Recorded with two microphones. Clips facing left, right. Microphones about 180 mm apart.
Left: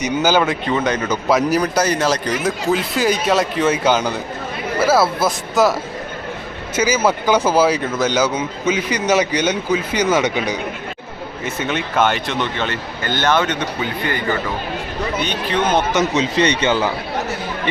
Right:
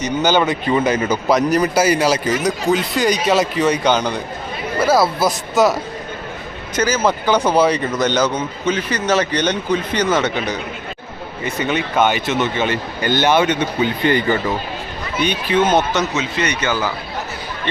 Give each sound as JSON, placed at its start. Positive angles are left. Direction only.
{"t": 0.0, "sound": "a man's voice", "side_deg": 5}
{"t": 0.7, "sound": "speech", "side_deg": -10}
{"t": 1.3, "sound": "a man's voice", "side_deg": 0}
{"t": 6.7, "sound": "a man's voice", "side_deg": 10}
{"t": 15.2, "sound": "speech", "side_deg": -10}
{"t": 16.1, "sound": "speech", "side_deg": 35}